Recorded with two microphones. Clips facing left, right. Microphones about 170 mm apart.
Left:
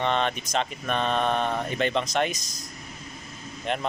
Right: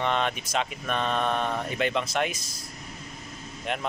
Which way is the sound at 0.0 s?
5° right (ahead or behind).